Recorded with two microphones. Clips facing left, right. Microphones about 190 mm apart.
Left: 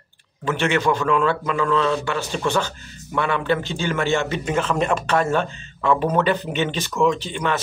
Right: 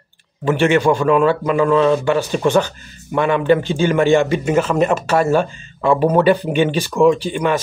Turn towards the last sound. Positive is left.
turn(degrees=-10)  # may be behind; listen again after turning